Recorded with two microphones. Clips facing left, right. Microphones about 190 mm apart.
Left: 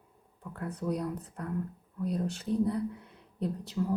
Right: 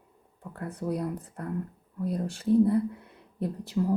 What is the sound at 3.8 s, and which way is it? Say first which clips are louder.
Speech: right 5 dB; 35° right (ahead or behind).